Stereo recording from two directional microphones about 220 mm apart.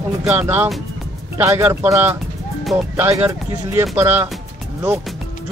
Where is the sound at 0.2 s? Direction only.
5° right (ahead or behind).